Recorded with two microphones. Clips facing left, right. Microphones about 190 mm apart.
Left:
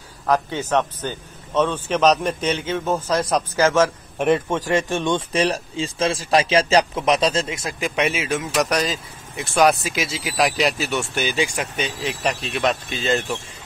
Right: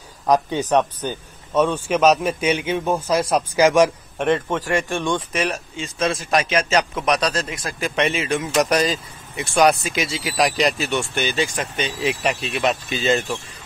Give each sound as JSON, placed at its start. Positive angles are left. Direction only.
{"t": 0.3, "sound": "a man's voice", "side_deg": -15}
{"t": 4.2, "sound": "a man's voice", "side_deg": 10}
{"t": 7.9, "sound": "speech", "side_deg": 5}